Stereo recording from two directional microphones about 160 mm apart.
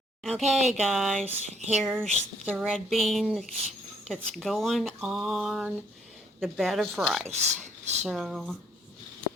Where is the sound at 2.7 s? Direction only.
Centre (ahead or behind).